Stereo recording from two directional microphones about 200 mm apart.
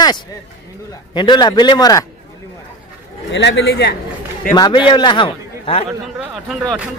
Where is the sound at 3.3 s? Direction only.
65° left (ahead or behind).